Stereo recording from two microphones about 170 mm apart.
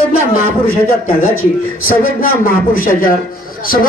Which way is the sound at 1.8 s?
55° left (ahead or behind).